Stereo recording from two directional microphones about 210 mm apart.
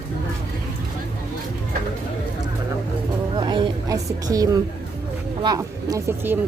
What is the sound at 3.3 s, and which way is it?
A woman's voice, 20° right (ahead or behind).